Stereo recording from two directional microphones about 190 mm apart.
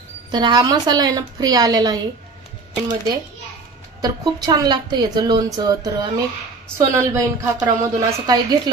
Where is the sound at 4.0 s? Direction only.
20° right (ahead or behind).